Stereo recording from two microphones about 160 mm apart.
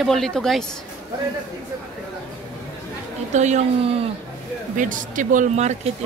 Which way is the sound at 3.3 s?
45° right (ahead or behind).